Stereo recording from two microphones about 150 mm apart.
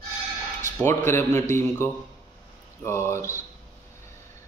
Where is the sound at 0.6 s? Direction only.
15° left (ahead or behind).